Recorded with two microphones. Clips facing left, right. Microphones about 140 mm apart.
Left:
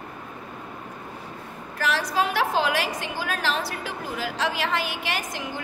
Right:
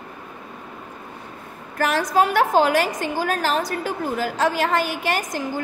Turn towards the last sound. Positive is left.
turn(degrees=-45)  # may be behind; listen again after turning